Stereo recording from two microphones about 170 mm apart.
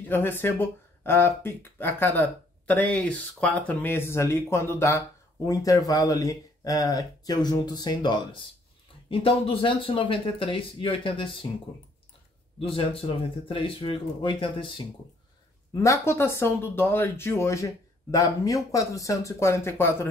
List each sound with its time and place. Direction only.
0.1 s speech: 10° left (ahead or behind); by 11.4 s 30° left (ahead or behind)
12.5 s speech: 35° left (ahead or behind)
15.7 s speech: 20° left (ahead or behind)